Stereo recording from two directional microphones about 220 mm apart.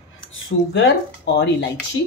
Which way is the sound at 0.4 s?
55° left (ahead or behind).